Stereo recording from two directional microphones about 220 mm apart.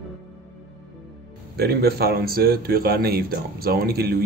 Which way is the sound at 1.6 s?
45° right (ahead or behind).